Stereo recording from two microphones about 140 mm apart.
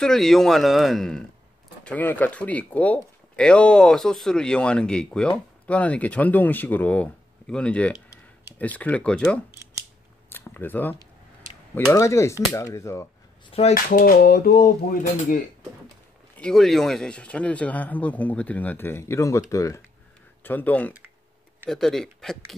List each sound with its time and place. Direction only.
0.0 s speech: 5° left (ahead or behind)
10.3 s a sound: 15° left (ahead or behind)
11.9 s speech: 20° left (ahead or behind)
13.5 s speech: 50° left (ahead or behind)
13.8 s a sound: 85° left
16.3 s speech: 5° left (ahead or behind)